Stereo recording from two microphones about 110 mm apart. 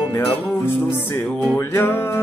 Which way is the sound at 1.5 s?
20° left (ahead or behind).